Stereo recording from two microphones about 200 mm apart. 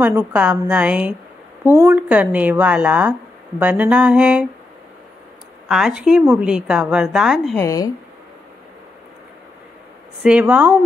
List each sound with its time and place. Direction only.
0.0 s a woman's voice: 10° right (ahead or behind)
5.7 s a woman's voice: centre (ahead or behind)
7.5 s speech: 15° left (ahead or behind)
10.2 s speech: 5° right (ahead or behind)